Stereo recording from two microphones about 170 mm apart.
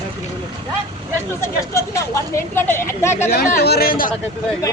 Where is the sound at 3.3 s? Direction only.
65° left (ahead or behind).